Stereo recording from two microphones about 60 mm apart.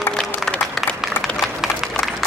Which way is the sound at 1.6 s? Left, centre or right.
Centre.